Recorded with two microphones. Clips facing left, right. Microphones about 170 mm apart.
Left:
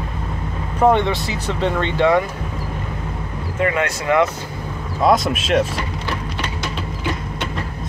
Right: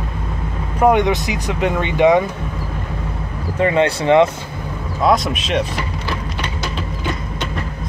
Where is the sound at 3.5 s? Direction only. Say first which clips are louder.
Right 5 dB; 30° right (ahead or behind).